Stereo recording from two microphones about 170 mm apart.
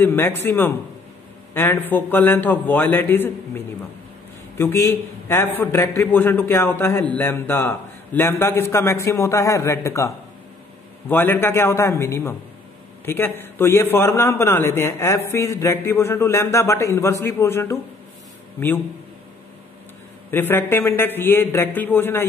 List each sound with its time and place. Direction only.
0.0 s a man's voice: 10° left (ahead or behind)
20.2 s a man's voice: 10° left (ahead or behind)